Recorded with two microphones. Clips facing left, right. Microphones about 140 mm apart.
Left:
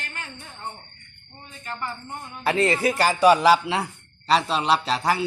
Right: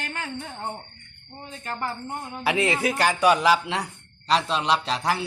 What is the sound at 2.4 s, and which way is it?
A man's voice, 5° right (ahead or behind).